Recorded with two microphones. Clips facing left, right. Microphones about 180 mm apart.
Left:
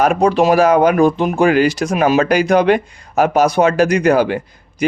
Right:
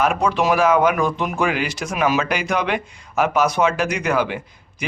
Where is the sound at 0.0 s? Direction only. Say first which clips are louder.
Left 6 dB; 40° left (ahead or behind).